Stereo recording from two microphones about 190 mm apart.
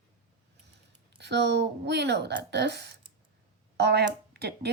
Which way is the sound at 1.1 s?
65° right (ahead or behind).